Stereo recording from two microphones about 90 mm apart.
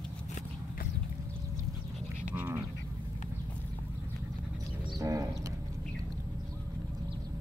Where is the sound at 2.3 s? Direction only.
20° right (ahead or behind).